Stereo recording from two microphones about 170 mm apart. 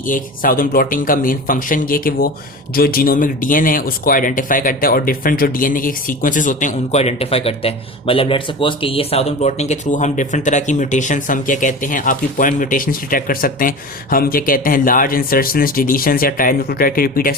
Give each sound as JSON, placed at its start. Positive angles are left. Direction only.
{"t": 0.0, "sound": "speech", "side_deg": 55}